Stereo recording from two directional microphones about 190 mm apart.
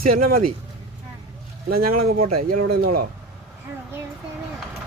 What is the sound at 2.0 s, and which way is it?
Speech, 50° right (ahead or behind).